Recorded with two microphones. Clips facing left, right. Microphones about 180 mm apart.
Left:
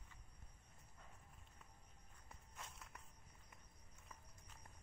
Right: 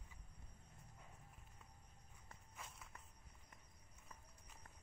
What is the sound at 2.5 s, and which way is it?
Walk, centre (ahead or behind).